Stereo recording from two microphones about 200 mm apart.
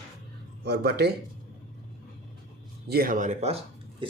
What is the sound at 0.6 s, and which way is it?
Speech, 55° right (ahead or behind).